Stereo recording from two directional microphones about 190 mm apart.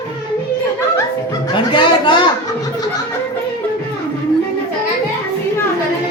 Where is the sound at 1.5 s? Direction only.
25° left (ahead or behind).